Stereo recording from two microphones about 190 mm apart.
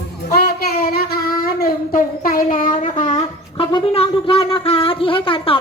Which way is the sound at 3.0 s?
40° left (ahead or behind).